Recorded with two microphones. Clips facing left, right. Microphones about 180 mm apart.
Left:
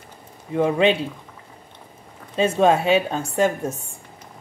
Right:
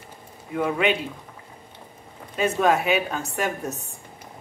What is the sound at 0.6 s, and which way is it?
Speech, 30° left (ahead or behind).